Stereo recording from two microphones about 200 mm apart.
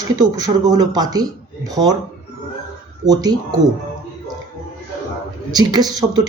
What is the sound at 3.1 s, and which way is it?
Speech, 20° right (ahead or behind).